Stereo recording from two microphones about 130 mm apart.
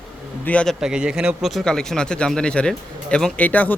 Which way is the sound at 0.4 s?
10° left (ahead or behind).